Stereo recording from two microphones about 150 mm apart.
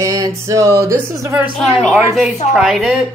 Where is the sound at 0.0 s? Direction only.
20° right (ahead or behind).